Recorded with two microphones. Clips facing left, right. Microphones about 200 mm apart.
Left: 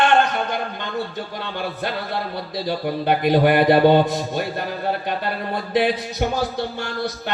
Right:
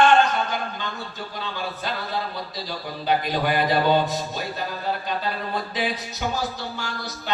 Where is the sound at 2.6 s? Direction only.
60° left (ahead or behind).